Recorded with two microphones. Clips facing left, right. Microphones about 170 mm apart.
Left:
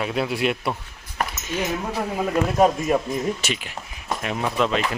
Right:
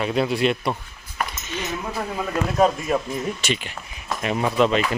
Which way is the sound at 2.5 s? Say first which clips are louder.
Even; 10° left (ahead or behind).